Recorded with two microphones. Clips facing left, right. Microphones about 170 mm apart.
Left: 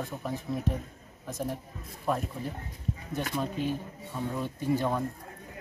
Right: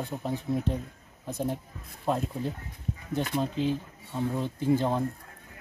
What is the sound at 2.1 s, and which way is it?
Speech, 25° right (ahead or behind).